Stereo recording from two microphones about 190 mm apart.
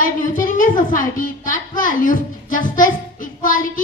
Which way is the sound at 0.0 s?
45° left (ahead or behind).